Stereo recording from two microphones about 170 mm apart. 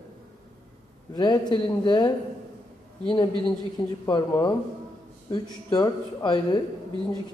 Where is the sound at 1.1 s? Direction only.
25° left (ahead or behind).